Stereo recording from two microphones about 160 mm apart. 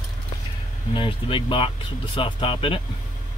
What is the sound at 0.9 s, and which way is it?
Speech, 30° left (ahead or behind).